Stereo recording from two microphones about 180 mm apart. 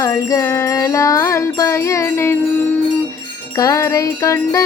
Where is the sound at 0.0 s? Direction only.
15° left (ahead or behind).